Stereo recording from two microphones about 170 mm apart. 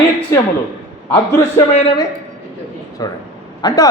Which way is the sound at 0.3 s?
15° left (ahead or behind).